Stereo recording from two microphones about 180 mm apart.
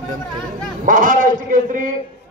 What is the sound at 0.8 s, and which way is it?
A man's voice, 50° right (ahead or behind).